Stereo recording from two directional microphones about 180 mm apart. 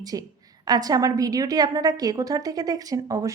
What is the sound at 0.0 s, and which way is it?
A woman's voice, 20° right (ahead or behind).